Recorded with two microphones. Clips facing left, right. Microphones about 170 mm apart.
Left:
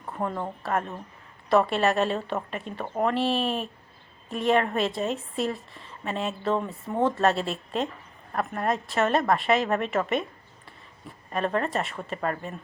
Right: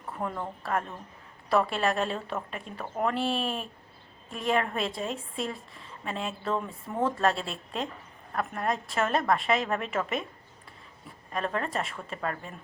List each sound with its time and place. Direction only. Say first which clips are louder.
0.6 s a woman's voice: left 2 dB; 5° left (ahead or behind)
6.5 s speech: left 4 dB; 25° left (ahead or behind)
7.0 s a woman's voice: left 3 dB; centre (ahead or behind)
11.3 s a woman's voice: left 4 dB; centre (ahead or behind)